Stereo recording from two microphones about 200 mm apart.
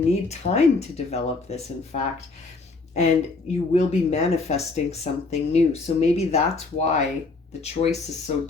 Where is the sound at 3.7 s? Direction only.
35° left (ahead or behind).